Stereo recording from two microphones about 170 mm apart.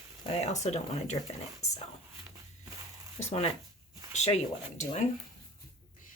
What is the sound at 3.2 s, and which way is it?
Speech, 40° left (ahead or behind).